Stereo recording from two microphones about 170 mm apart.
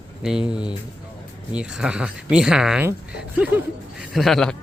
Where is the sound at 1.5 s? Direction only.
5° right (ahead or behind).